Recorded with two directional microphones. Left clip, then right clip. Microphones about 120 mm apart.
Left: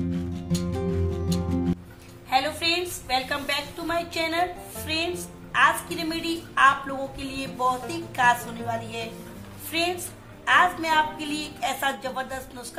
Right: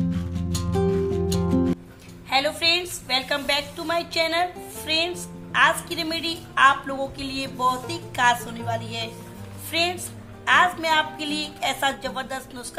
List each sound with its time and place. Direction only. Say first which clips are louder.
0.1 s music: even; centre (ahead or behind)
2.2 s a woman's voice: right 2 dB; 40° right (ahead or behind)